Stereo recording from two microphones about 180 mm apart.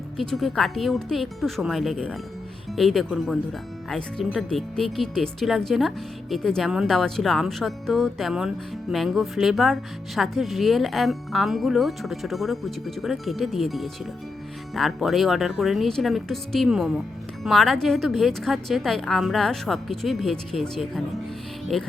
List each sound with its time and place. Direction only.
0.2 s speech: centre (ahead or behind)